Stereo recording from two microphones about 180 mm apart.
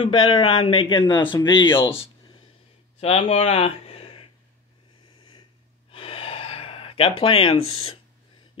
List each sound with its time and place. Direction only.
0.0 s speech: 25° left (ahead or behind)
3.0 s speech: 35° left (ahead or behind)
5.9 s gasp: 30° left (ahead or behind)